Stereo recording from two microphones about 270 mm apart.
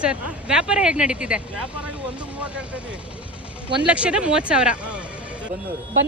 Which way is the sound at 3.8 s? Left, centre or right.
Centre.